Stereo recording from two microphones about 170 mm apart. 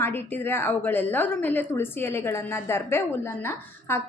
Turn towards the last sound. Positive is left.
turn(degrees=15)  # may be behind; listen again after turning